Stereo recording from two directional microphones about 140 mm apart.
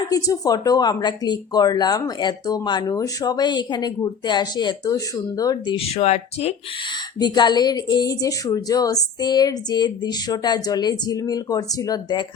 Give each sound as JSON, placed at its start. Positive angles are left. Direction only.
{"t": 0.1, "sound": "speech", "side_deg": 25}
{"t": 5.7, "sound": "speech", "side_deg": 45}
{"t": 7.2, "sound": "speech", "side_deg": 30}